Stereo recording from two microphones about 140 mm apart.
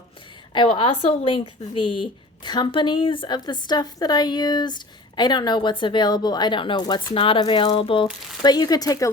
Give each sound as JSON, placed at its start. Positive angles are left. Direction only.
{"t": 0.5, "sound": "a woman's voice", "side_deg": 35}
{"t": 8.4, "sound": "speech", "side_deg": 30}